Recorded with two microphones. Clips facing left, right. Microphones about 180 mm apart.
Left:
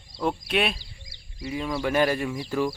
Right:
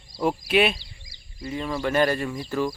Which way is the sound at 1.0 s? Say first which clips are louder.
Left 1 dB; 60° left (ahead or behind).